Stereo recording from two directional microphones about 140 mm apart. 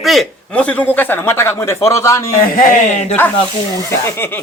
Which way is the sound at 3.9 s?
15° left (ahead or behind).